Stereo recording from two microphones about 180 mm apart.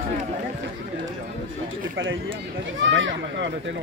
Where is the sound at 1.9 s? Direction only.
90° right.